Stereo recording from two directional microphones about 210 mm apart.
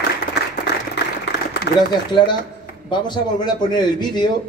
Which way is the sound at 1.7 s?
55° left (ahead or behind).